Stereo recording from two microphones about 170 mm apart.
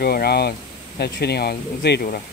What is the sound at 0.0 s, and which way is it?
Speech, 65° left (ahead or behind).